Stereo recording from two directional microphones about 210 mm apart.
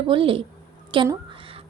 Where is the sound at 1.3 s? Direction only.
25° right (ahead or behind).